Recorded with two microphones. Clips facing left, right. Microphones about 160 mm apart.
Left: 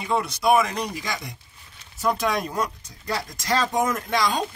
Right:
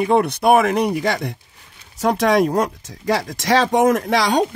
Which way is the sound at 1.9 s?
90° right.